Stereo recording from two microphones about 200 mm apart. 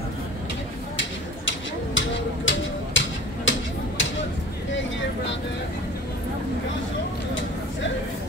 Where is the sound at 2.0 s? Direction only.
70° left (ahead or behind).